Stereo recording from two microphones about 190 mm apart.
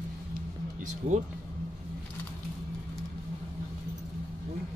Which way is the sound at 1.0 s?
40° right (ahead or behind).